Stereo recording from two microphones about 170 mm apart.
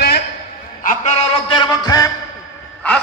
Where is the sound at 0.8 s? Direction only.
45° left (ahead or behind).